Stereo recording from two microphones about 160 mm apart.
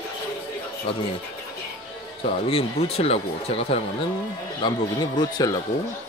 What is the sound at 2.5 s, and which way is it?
Speech, 40° left (ahead or behind).